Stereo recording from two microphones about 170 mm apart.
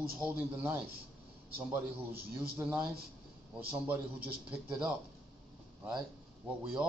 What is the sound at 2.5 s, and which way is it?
A man's voice, 15° right (ahead or behind).